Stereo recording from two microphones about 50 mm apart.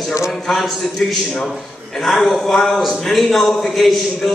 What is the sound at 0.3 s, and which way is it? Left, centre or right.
A man's voice, centre.